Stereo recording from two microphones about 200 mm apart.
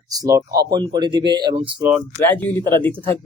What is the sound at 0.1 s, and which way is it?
Speech, 20° right (ahead or behind).